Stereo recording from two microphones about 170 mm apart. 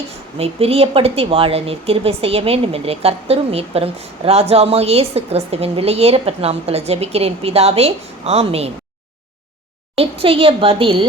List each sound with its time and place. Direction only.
0.3 s a woman's voice: 35° right (ahead or behind)
9.9 s a woman's voice: 35° right (ahead or behind)